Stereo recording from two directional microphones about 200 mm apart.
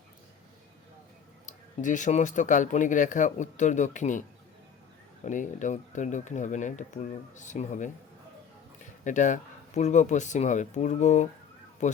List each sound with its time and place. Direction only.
1.5 s speech: 40° left (ahead or behind)
5.2 s speech: 40° left (ahead or behind)
9.0 s speech: 40° left (ahead or behind)